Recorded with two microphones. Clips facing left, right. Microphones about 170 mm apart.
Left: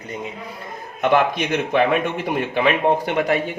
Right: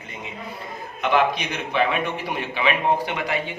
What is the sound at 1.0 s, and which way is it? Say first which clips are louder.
Speech: left 3 dB; 50° left (ahead or behind).